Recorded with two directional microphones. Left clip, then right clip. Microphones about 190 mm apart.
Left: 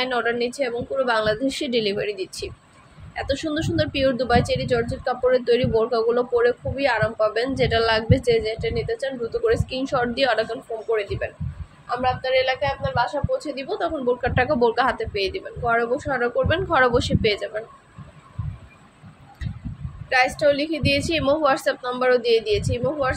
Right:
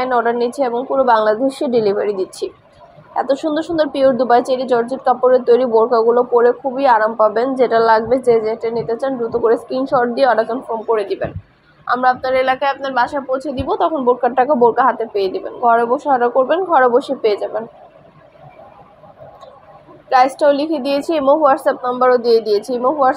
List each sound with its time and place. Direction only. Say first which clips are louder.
0.0 s a woman's voice: right 7 dB; 5° left (ahead or behind)
9.5 s a woman's voice: right 7 dB; 10° left (ahead or behind)
11.0 s a woman's voice: right 6 dB; 10° right (ahead or behind); by 15.0 s 15° left (ahead or behind)
15.1 s a woman's voice: right 7 dB; centre (ahead or behind)
20.1 s a woman's voice: right 7 dB; 10° right (ahead or behind)